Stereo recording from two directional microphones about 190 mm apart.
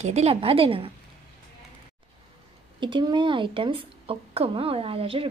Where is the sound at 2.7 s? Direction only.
25° right (ahead or behind).